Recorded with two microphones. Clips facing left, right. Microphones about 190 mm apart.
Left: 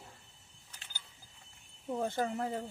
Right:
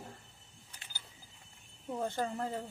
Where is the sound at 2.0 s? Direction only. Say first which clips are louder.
Left 1 dB; 15° left (ahead or behind).